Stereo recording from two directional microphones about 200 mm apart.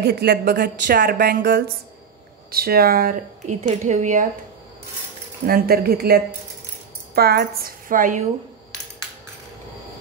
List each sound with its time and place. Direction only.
0.0 s speech: 50° right (ahead or behind)
5.5 s speech: 50° right (ahead or behind)